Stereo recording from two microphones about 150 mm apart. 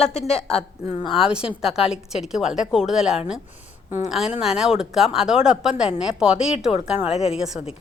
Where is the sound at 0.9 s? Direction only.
35° left (ahead or behind).